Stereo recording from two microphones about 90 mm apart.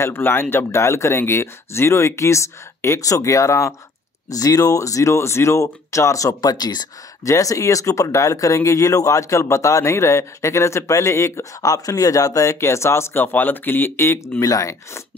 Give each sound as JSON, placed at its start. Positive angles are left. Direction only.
{"t": 0.0, "sound": "speech", "side_deg": 25}
{"t": 14.4, "sound": "speech", "side_deg": 40}